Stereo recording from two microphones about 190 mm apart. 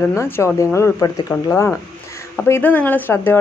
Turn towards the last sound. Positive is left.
turn(degrees=10)  # may be behind; listen again after turning